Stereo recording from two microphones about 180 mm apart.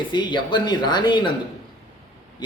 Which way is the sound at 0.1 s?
25° left (ahead or behind).